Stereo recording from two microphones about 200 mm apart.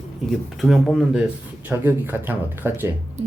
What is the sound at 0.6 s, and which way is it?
Speech, centre (ahead or behind).